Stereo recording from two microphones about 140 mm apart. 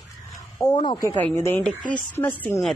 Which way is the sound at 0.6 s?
30° left (ahead or behind).